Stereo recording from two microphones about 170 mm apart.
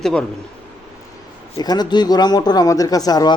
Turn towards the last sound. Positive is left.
turn(degrees=20)  # may be behind; listen again after turning